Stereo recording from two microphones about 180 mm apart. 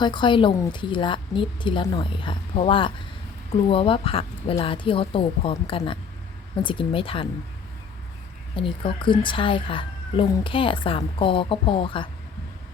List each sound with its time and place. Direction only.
0.0 s speech: 25° left (ahead or behind)
8.5 s speech: 30° left (ahead or behind)